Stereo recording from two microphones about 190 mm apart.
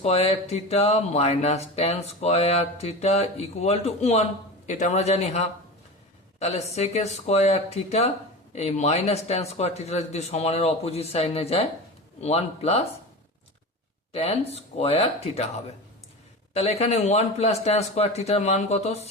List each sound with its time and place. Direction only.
0.0 s speech: 35° left (ahead or behind)
14.1 s speech: 35° left (ahead or behind)
16.6 s speech: 35° left (ahead or behind)